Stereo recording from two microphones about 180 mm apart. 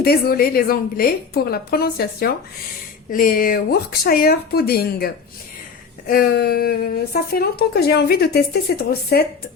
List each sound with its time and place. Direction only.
0.0 s speech: 60° left (ahead or behind)